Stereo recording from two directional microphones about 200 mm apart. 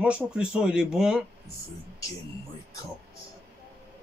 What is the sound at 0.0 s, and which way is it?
Speech, 5° right (ahead or behind).